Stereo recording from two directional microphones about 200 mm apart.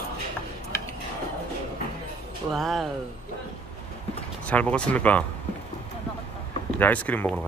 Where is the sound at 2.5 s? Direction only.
Centre (ahead or behind).